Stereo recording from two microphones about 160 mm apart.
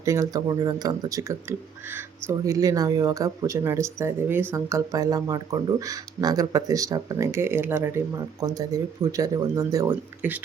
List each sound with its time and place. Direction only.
0.0 s speech: 20° right (ahead or behind)